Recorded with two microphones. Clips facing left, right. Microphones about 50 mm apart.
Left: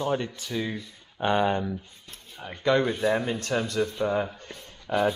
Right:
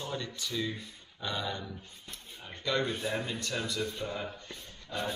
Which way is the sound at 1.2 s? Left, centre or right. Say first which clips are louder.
Left 12 dB; left.